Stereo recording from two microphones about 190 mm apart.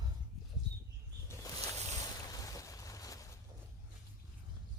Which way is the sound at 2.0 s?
20° left (ahead or behind).